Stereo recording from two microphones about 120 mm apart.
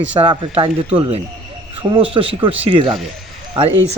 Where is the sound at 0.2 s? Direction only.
45° right (ahead or behind).